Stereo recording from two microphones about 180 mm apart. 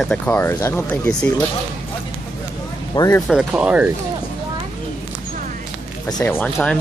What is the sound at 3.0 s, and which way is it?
Speech, 15° left (ahead or behind).